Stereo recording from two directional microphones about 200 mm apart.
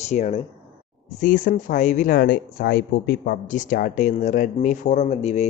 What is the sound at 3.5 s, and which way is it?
Speech, 40° left (ahead or behind).